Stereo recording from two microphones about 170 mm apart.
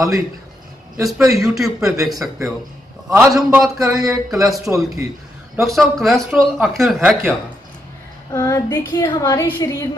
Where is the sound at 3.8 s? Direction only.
20° right (ahead or behind).